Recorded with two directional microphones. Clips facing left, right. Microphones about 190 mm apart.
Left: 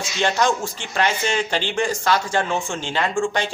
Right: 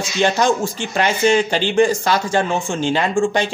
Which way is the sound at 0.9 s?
10° right (ahead or behind).